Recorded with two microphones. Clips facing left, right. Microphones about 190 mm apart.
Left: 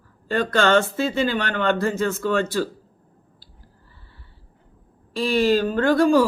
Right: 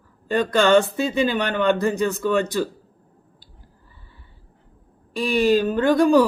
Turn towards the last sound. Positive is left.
turn(degrees=-15)  # may be behind; listen again after turning